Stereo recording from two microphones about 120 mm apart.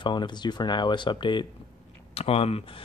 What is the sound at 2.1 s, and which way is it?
Speech, 55° left (ahead or behind).